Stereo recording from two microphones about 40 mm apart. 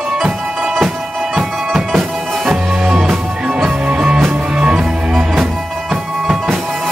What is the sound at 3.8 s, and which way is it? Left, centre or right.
Music, right.